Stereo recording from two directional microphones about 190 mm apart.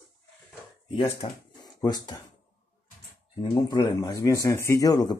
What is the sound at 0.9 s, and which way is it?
Speech, 30° left (ahead or behind).